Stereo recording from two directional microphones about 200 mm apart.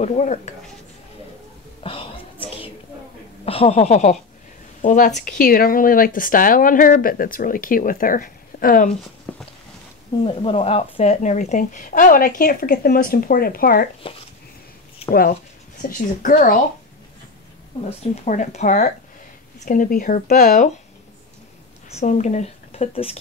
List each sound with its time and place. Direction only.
0.0 s a woman's voice: 35° left (ahead or behind)
1.8 s a sound: 25° left (ahead or behind)
3.4 s speech: 30° left (ahead or behind)
9.3 s a sound: 5° left (ahead or behind)
10.2 s a woman's voice: 30° left (ahead or behind); by 13.8 s 45° left (ahead or behind)
14.0 s speech: 25° left (ahead or behind)
15.9 s a woman's voice: 40° left (ahead or behind)
18.1 s a woman's voice: 40° left (ahead or behind)
21.9 s speech: 35° left (ahead or behind)